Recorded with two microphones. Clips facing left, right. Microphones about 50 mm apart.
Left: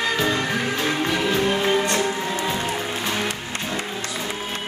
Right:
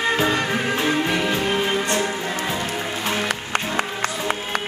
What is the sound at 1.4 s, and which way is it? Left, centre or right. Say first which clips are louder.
Music: left 1 dB; centre.